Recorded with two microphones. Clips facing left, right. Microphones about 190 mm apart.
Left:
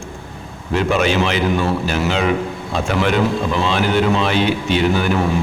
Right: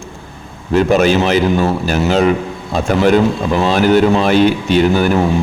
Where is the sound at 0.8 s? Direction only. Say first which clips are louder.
Right 5 dB; 40° right (ahead or behind).